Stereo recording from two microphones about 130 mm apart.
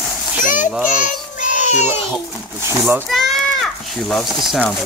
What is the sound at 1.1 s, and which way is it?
Child singing, 80° left.